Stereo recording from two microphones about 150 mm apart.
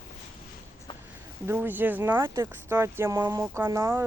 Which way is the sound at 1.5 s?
10° right (ahead or behind).